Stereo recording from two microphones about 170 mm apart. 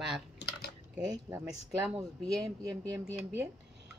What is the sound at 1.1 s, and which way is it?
Speech, 10° right (ahead or behind).